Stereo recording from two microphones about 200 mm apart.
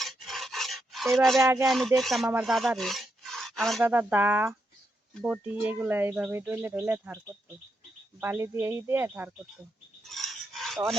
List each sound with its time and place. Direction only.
0.0 s dog: centre (ahead or behind)
1.4 s speech: 15° right (ahead or behind)
1.6 s speech: centre (ahead or behind)
2.0 s filing: centre (ahead or behind)
3.8 s speech: 10° right (ahead or behind)
8.2 s speech: 10° right (ahead or behind)
10.0 s filing: centre (ahead or behind)